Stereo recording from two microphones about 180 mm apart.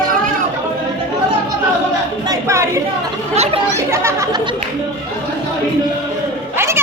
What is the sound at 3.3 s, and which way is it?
Chatter, 35° right (ahead or behind).